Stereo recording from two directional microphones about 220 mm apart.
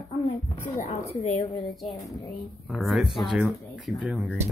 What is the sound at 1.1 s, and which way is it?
Speech, 30° left (ahead or behind).